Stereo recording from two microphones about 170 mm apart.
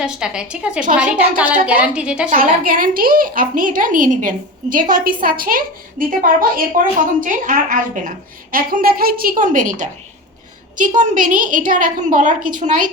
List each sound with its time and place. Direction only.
0.0 s a woman's voice: 5° right (ahead or behind)
2.3 s a woman's voice: 55° right (ahead or behind)